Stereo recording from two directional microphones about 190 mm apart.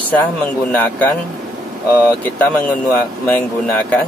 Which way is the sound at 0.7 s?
10° left (ahead or behind).